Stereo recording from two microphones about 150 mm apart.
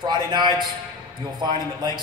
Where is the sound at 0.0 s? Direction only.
30° right (ahead or behind).